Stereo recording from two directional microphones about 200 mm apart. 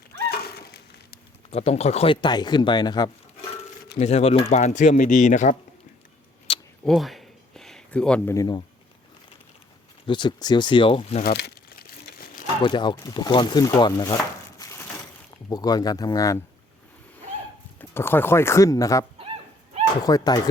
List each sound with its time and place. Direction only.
0.3 s a sound: 50° left (ahead or behind)
1.5 s speech: 30° left (ahead or behind)
3.9 s speech: 30° left (ahead or behind)
6.5 s a sound: 30° left (ahead or behind)
6.8 s a sound: centre (ahead or behind); by 8.6 s 20° left (ahead or behind)
10.1 s speech: 20° left (ahead or behind)
11.2 s speech: 55° left (ahead or behind)
12.6 s speech: 25° left (ahead or behind)
14.6 s crushing: 15° left (ahead or behind)
15.4 s speech: 20° left (ahead or behind)
17.7 s speech: 10° left (ahead or behind)
20.1 s speech: 20° left (ahead or behind)